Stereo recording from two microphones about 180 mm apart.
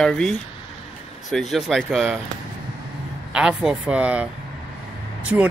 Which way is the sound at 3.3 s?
5° right (ahead or behind).